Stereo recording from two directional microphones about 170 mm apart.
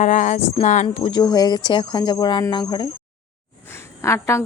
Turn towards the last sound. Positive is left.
turn(degrees=15)  # may be behind; listen again after turning